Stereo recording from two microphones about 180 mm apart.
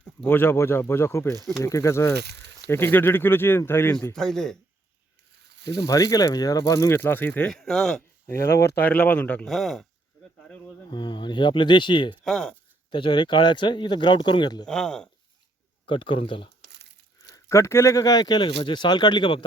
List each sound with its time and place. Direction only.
0.2 s speech: 10° left (ahead or behind)
2.1 s speech: 70° right (ahead or behind)
2.6 s speech: 10° left (ahead or behind)
4.1 s speech: 5° left (ahead or behind)
5.6 s speech: 20° left (ahead or behind); by 8.4 s 5° left (ahead or behind)
8.4 s speech: 15° left (ahead or behind); by 9.8 s centre (ahead or behind)
10.8 s speech: 25° left (ahead or behind)
12.2 s speech: 5° left (ahead or behind)
12.9 s speech: 25° left (ahead or behind)
14.7 s speech: 5° left (ahead or behind)
15.9 s speech: 30° left (ahead or behind)
17.2 s speech: 20° left (ahead or behind)